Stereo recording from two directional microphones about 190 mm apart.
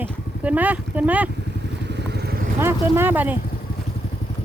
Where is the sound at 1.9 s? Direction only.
60° right (ahead or behind).